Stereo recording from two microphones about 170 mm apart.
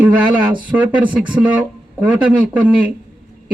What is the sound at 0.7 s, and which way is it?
Speech, 10° right (ahead or behind).